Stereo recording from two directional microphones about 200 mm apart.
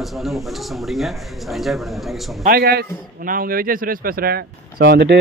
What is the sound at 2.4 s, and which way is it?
Speech, 50° right (ahead or behind).